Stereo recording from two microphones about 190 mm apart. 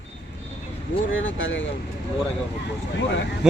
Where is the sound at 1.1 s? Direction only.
90° left.